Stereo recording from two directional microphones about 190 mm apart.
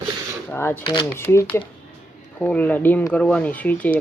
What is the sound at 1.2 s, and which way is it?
Speech, 15° left (ahead or behind).